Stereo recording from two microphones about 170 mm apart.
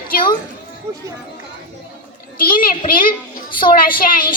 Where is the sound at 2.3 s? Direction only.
55° left (ahead or behind).